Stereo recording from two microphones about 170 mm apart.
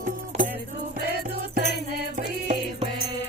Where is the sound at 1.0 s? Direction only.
65° right (ahead or behind).